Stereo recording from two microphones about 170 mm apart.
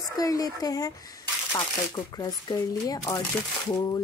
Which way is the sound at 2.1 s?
20° left (ahead or behind).